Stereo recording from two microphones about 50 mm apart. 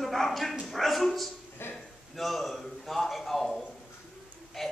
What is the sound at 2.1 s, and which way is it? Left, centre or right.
A man's voice, centre.